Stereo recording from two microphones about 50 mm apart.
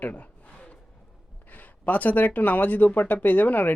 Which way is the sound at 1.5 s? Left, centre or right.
Left.